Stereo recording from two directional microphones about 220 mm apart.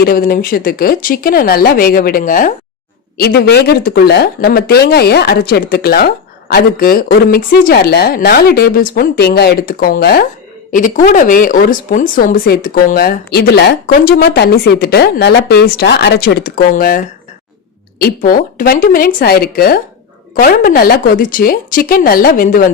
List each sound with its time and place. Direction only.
0.0 s speech: 40° left (ahead or behind)
18.0 s speech: 40° left (ahead or behind)